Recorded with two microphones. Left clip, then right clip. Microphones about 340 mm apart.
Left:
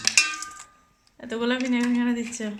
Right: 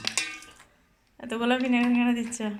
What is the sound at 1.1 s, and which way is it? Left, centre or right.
Speech, centre.